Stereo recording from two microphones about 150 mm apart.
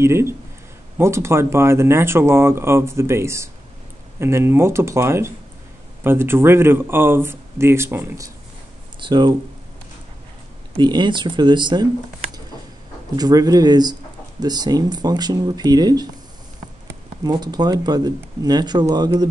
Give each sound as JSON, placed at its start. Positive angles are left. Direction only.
{"t": 0.0, "sound": "speech", "side_deg": -15}
{"t": 9.0, "sound": "speech", "side_deg": -30}
{"t": 10.8, "sound": "speech", "side_deg": -30}
{"t": 13.1, "sound": "speech", "side_deg": -25}
{"t": 17.2, "sound": "speech", "side_deg": -25}